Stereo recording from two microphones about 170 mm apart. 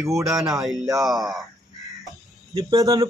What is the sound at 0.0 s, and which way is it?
Speech, centre (ahead or behind).